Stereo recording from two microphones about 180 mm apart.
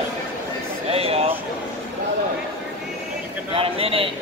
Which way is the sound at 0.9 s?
35° right (ahead or behind).